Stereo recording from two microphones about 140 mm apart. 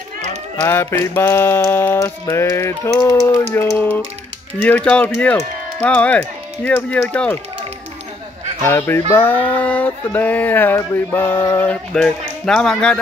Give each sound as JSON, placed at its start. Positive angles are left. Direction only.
{"t": 0.6, "sound": "speech", "side_deg": 15}
{"t": 8.6, "sound": "speech", "side_deg": 15}